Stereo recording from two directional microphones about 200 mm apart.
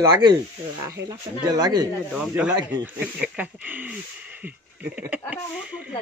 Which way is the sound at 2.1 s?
5° right (ahead or behind).